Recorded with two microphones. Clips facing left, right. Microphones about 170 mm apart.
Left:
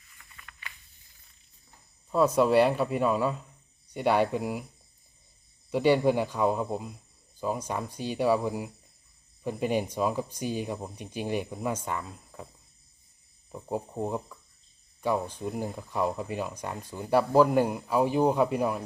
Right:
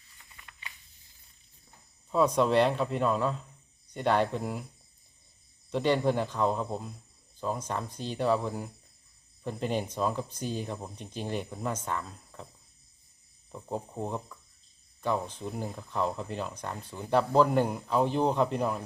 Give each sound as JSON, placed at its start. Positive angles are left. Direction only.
{"t": 0.2, "sound": "a sound", "side_deg": -20}
{"t": 2.0, "sound": "speech", "side_deg": 5}
{"t": 5.7, "sound": "speech", "side_deg": 10}
{"t": 13.5, "sound": "speech", "side_deg": 10}